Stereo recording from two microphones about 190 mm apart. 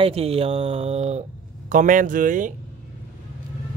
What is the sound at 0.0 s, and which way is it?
Speech, 30° right (ahead or behind).